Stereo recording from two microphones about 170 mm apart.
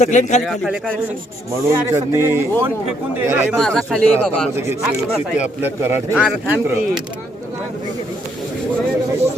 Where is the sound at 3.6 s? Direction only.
5° left (ahead or behind).